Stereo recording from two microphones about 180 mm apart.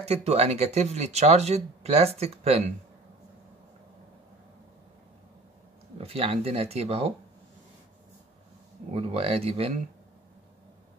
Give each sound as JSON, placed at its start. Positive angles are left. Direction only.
{"t": 0.0, "sound": "speech", "side_deg": -35}
{"t": 5.9, "sound": "speech", "side_deg": -35}
{"t": 8.9, "sound": "speech", "side_deg": -30}